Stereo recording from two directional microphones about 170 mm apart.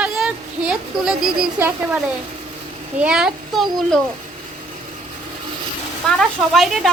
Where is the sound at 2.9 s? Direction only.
5° right (ahead or behind).